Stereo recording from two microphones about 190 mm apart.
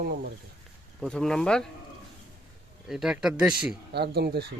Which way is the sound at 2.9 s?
Centre (ahead or behind).